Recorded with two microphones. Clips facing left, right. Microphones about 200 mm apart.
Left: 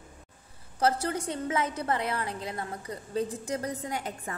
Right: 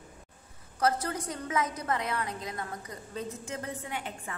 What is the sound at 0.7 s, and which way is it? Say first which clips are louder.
A woman's voice: left 2 dB; 30° left (ahead or behind).